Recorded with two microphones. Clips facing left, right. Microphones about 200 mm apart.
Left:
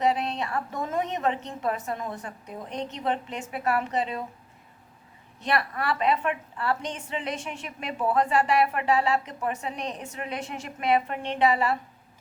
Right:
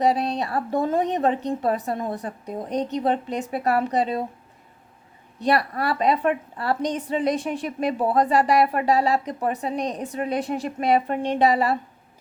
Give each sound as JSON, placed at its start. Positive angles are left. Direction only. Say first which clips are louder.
{"t": 0.0, "sound": "a woman's voice", "louder": "right 4 dB", "side_deg": -35}
{"t": 5.4, "sound": "a woman's voice", "louder": "right 6 dB", "side_deg": -35}